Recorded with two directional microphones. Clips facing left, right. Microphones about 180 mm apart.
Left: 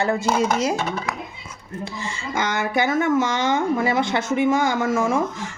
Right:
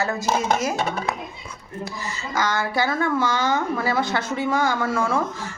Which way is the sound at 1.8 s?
25° left (ahead or behind).